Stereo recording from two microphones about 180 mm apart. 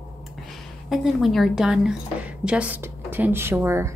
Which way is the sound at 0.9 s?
Centre (ahead or behind).